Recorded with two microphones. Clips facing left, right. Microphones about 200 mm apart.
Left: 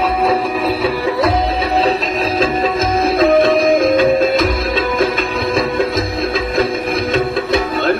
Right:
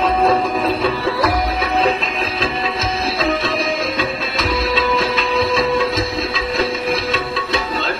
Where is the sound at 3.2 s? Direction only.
50° left (ahead or behind).